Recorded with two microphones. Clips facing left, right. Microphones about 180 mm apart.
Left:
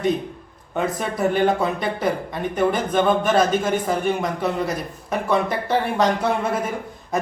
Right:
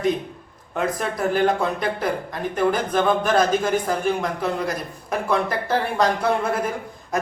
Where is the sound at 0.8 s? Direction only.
Centre (ahead or behind).